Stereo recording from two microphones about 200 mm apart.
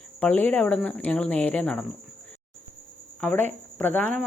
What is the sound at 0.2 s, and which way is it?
Speech, 10° left (ahead or behind).